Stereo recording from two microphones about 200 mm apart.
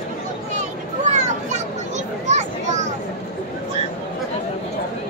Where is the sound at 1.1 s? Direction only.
35° right (ahead or behind).